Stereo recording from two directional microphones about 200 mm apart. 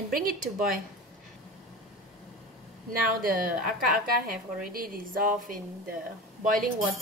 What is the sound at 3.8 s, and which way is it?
A woman's voice, 45° right (ahead or behind).